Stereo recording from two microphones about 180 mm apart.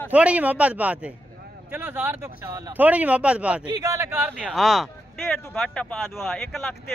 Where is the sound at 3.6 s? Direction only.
20° right (ahead or behind); by 6.7 s centre (ahead or behind).